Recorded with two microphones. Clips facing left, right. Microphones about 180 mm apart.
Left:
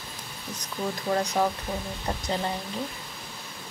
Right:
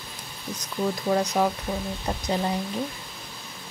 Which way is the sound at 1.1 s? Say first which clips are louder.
Right 2 dB; 5° right (ahead or behind).